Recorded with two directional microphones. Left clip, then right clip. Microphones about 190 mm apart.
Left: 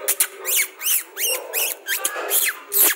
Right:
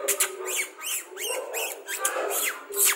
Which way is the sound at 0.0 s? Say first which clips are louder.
Left 1 dB; centre (ahead or behind).